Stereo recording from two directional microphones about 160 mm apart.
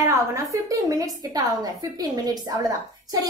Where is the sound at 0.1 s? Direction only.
20° right (ahead or behind).